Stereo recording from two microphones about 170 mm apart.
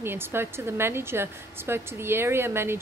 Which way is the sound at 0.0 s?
15° right (ahead or behind).